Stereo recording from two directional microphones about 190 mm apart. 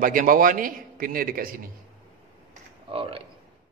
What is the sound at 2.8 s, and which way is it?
Speech, 30° right (ahead or behind).